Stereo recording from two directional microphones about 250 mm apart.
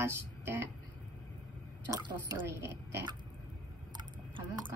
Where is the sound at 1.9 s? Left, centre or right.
Centre.